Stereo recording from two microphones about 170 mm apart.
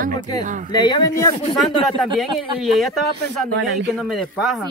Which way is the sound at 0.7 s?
25° left (ahead or behind).